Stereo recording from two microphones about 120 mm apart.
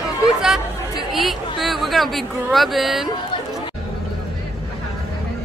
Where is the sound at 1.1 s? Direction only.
Centre (ahead or behind).